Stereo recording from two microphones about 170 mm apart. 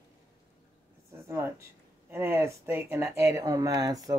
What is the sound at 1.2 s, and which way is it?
Speech, 15° right (ahead or behind).